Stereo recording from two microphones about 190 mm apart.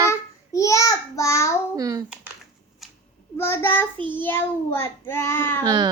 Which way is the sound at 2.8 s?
Centre (ahead or behind).